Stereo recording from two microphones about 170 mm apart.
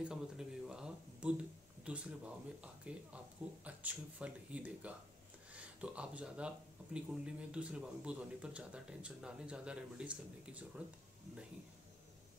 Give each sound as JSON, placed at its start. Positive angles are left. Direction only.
{"t": 0.0, "sound": "a man's voice", "side_deg": -5}